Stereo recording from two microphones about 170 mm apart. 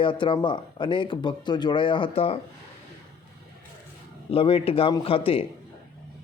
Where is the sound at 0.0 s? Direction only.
30° left (ahead or behind).